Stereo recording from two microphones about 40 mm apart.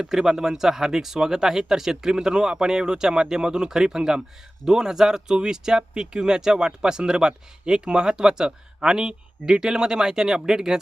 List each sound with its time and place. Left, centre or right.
0.0 s speech: centre